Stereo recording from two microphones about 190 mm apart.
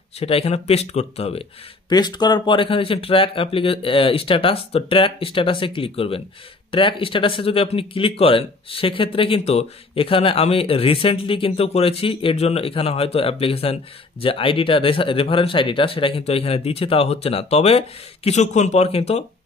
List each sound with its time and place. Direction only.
0.2 s speech: 30° left (ahead or behind)
1.9 s speech: 20° left (ahead or behind)